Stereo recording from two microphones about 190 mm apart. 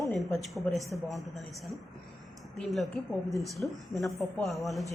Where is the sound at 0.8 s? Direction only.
15° right (ahead or behind).